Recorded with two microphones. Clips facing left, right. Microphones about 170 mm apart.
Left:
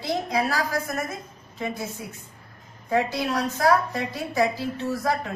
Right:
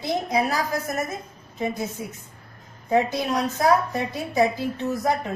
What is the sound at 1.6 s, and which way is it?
A woman's voice, 20° right (ahead or behind).